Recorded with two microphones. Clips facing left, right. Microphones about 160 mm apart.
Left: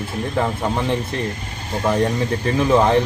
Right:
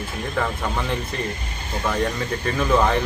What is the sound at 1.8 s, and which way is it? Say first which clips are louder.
Speech: left 5 dB; 25° left (ahead or behind).